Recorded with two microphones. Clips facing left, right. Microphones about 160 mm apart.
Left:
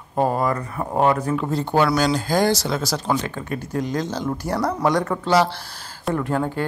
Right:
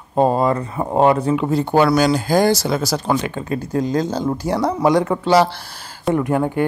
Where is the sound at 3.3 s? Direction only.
30° right (ahead or behind).